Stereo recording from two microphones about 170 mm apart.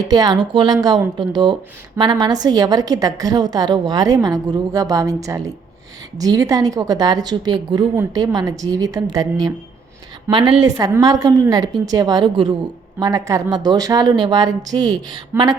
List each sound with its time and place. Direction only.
0.1 s a woman's voice: 25° right (ahead or behind)